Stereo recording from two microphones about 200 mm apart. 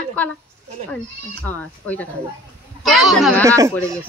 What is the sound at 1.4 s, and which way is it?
A child's voice, 10° left (ahead or behind).